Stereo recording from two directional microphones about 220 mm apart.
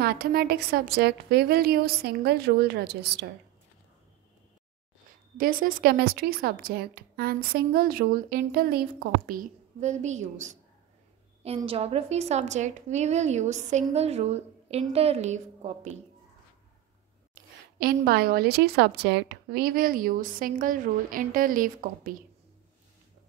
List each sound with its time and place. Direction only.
0.0 s a woman's voice: 45° right (ahead or behind)
5.4 s a woman's voice: 40° right (ahead or behind)
17.3 s a woman's voice: 40° right (ahead or behind)